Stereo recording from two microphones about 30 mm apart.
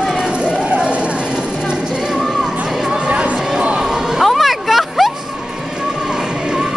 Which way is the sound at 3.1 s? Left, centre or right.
Right.